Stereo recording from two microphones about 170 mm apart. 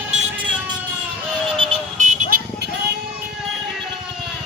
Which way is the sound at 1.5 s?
30° right (ahead or behind).